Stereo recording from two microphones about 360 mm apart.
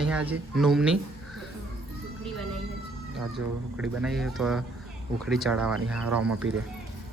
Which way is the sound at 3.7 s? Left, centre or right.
Centre.